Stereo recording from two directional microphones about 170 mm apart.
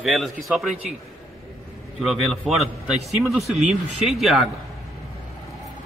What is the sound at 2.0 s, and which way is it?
Speech, centre (ahead or behind).